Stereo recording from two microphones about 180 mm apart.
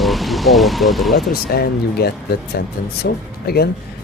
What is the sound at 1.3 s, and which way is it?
Speech, 60° left (ahead or behind).